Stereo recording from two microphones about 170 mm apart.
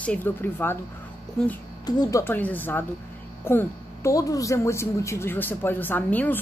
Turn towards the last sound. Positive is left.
turn(degrees=10)  # may be behind; listen again after turning